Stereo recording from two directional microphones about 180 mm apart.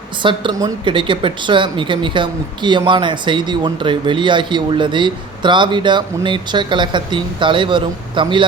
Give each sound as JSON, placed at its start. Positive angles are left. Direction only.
{"t": 0.2, "sound": "speech", "side_deg": -25}